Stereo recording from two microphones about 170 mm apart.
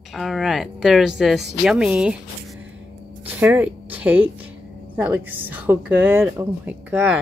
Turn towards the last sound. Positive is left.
turn(degrees=-10)  # may be behind; listen again after turning